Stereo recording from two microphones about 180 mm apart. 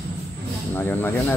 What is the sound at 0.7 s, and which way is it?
Speech, 10° left (ahead or behind).